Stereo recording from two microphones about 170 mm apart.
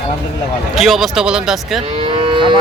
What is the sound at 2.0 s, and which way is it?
Moo, 30° right (ahead or behind).